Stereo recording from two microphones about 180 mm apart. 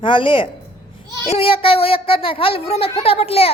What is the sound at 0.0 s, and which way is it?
A child's voice, 30° left (ahead or behind).